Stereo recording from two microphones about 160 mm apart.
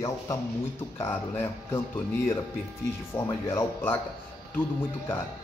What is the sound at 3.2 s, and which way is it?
Speech, 15° left (ahead or behind).